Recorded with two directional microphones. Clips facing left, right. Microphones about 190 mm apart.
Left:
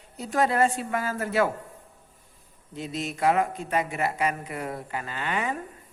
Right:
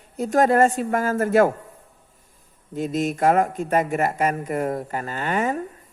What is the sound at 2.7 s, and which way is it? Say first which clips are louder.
A man's voice: right 8 dB; 50° right (ahead or behind).